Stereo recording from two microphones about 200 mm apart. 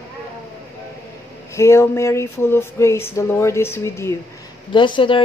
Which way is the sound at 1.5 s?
15° left (ahead or behind).